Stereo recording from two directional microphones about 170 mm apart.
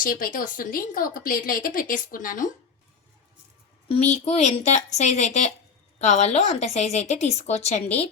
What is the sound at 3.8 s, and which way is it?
A woman's voice, 40° left (ahead or behind).